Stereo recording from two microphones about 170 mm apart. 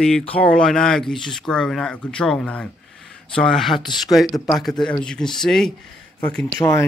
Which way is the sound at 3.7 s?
25° left (ahead or behind).